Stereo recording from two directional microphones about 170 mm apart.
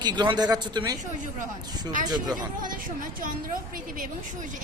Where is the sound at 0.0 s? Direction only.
25° right (ahead or behind).